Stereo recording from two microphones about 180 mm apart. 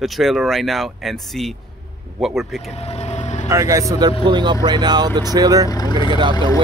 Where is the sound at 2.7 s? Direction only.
35° left (ahead or behind).